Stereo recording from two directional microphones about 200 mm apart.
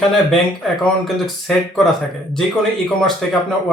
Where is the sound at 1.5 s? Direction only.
Centre (ahead or behind).